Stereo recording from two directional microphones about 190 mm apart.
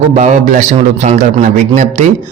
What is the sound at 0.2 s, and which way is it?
Speech, 40° right (ahead or behind).